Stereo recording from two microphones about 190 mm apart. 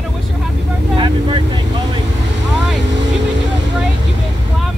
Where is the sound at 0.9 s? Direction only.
25° right (ahead or behind).